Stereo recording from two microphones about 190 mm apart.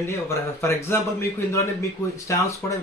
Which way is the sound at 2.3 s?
15° left (ahead or behind).